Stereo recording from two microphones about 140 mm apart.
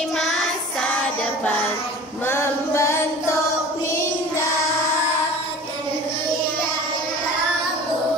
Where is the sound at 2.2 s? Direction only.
15° left (ahead or behind).